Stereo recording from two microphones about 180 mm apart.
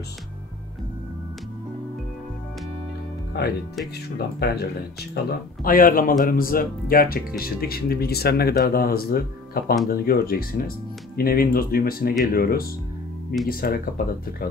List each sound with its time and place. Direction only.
4.4 s speech: 65° left (ahead or behind)
5.1 s speech: 55° left (ahead or behind)